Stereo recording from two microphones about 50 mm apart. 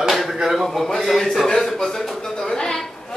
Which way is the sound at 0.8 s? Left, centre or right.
Centre.